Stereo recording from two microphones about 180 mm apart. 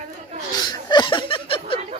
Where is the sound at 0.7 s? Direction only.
25° left (ahead or behind).